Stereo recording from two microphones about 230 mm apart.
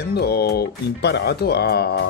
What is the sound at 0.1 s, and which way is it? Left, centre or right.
Speech, left.